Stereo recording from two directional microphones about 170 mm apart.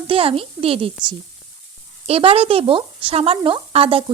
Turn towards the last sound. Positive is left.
turn(degrees=-30)  # may be behind; listen again after turning